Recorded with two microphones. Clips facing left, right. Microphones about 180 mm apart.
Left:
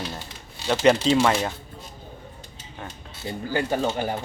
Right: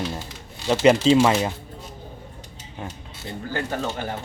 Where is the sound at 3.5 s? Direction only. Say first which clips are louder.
Left 4 dB; 15° left (ahead or behind).